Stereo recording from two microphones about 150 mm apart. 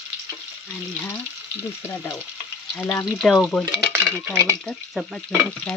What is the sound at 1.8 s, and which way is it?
Sizzle, 15° left (ahead or behind).